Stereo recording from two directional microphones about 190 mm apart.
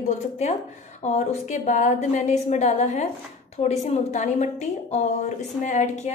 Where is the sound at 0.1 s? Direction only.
35° left (ahead or behind).